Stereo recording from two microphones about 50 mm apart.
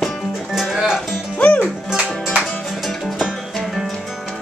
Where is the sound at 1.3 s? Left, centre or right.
Left.